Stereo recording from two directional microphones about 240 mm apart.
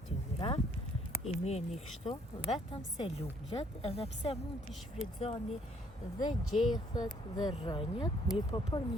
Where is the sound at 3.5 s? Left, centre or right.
Left.